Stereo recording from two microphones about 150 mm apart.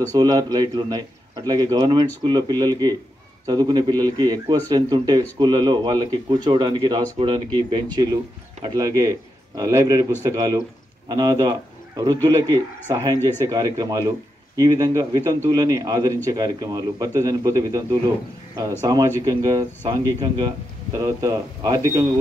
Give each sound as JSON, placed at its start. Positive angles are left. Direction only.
{"t": 0.1, "sound": "speech", "side_deg": -30}